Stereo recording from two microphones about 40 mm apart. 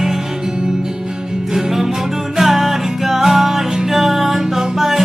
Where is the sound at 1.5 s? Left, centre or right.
Centre.